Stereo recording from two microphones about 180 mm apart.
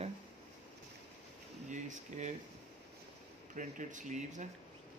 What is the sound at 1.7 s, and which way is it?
Speech, 40° right (ahead or behind).